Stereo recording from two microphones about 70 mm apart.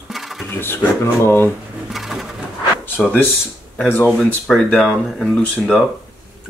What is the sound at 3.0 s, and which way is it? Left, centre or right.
Speech, left.